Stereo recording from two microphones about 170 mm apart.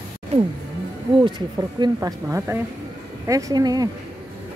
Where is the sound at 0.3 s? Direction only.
40° right (ahead or behind).